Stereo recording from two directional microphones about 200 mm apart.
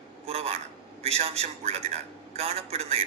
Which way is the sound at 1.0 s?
30° right (ahead or behind).